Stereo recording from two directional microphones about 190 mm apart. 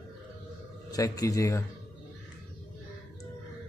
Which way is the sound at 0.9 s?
20° left (ahead or behind).